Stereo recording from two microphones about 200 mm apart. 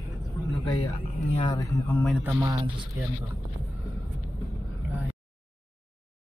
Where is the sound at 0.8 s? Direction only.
25° left (ahead or behind).